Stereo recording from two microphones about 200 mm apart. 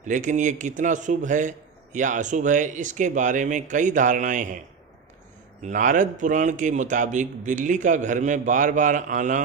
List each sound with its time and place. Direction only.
0.0 s a man's voice: 40° right (ahead or behind)
5.7 s a man's voice: 40° right (ahead or behind)